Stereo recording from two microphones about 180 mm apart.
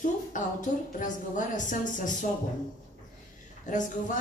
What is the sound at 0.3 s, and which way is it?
A woman's voice, 45° left (ahead or behind).